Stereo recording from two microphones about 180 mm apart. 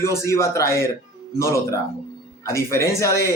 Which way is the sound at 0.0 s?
15° left (ahead or behind).